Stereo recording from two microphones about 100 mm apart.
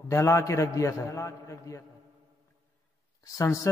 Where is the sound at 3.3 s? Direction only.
35° left (ahead or behind).